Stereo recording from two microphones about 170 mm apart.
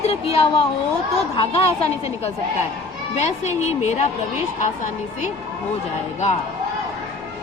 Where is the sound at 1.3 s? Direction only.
30° left (ahead or behind).